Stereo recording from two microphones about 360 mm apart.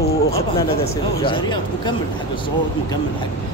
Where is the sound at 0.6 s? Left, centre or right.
Centre.